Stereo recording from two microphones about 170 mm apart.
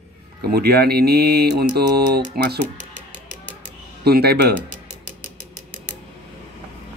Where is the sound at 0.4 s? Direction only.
65° right (ahead or behind).